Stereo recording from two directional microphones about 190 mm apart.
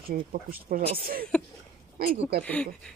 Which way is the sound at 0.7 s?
50° right (ahead or behind).